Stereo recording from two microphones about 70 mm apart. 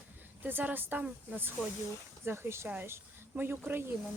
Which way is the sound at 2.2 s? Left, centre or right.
Right.